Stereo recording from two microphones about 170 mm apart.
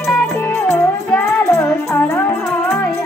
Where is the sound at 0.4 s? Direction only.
15° left (ahead or behind).